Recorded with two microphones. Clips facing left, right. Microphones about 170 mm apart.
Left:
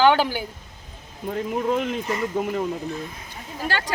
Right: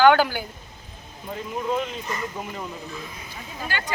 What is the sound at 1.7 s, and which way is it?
Speech, 60° left (ahead or behind).